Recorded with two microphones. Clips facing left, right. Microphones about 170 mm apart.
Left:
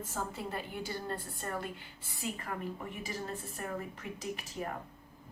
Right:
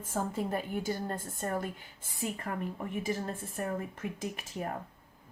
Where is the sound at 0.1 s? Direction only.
50° right (ahead or behind).